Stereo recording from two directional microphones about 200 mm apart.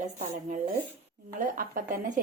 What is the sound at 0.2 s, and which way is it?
A woman's voice, 40° right (ahead or behind).